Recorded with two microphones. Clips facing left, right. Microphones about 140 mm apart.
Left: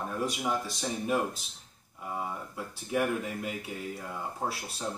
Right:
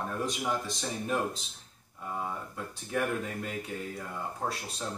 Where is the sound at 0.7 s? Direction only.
5° left (ahead or behind).